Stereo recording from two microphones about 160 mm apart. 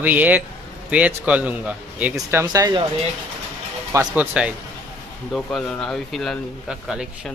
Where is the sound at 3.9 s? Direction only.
20° right (ahead or behind).